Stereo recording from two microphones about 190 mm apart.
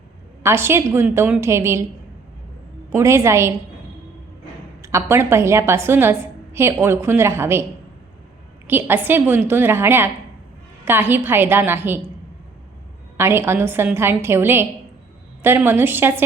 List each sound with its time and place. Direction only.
0.4 s a woman's voice: 15° right (ahead or behind)
2.9 s a woman's voice: 15° right (ahead or behind)
4.8 s a woman's voice: 15° right (ahead or behind)
8.6 s a woman's voice: 10° right (ahead or behind)
13.1 s a woman's voice: 15° right (ahead or behind)